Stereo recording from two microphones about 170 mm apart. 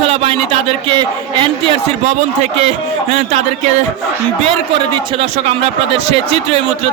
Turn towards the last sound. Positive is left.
turn(degrees=-35)  # may be behind; listen again after turning